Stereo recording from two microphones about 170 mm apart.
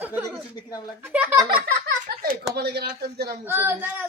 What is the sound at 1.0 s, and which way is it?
Speech, 10° right (ahead or behind).